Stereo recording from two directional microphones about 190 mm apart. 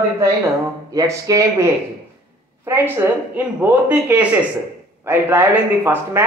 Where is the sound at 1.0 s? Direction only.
15° right (ahead or behind).